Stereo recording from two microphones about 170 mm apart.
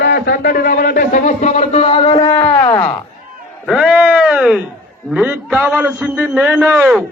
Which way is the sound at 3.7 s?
5° right (ahead or behind).